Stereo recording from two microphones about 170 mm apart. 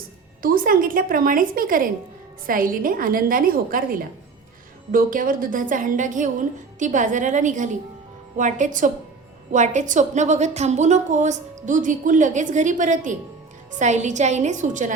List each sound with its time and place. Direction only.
0.4 s a woman's voice: 60° right (ahead or behind)